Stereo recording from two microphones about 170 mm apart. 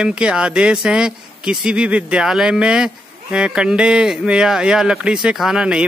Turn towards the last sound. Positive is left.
turn(degrees=-5)  # may be behind; listen again after turning